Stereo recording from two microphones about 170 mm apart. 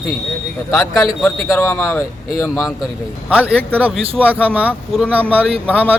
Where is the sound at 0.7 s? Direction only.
20° left (ahead or behind).